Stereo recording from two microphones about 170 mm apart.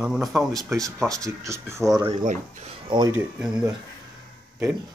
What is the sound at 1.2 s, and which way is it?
Speech, 15° right (ahead or behind).